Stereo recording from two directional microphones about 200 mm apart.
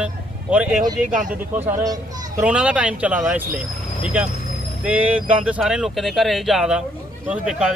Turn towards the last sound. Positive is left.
turn(degrees=-5)  # may be behind; listen again after turning